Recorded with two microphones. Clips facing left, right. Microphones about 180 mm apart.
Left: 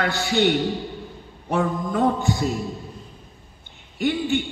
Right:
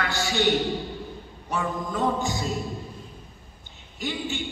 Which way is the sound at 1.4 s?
55° left (ahead or behind).